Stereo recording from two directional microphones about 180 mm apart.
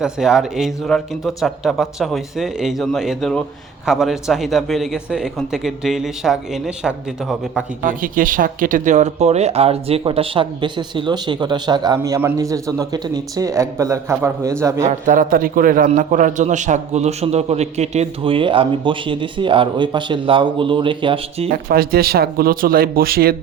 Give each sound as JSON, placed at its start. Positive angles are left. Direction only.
{"t": 0.0, "sound": "speech", "side_deg": -5}
{"t": 7.9, "sound": "a man's voice", "side_deg": -50}
{"t": 14.8, "sound": "a man's voice", "side_deg": -45}
{"t": 21.5, "sound": "speech", "side_deg": -55}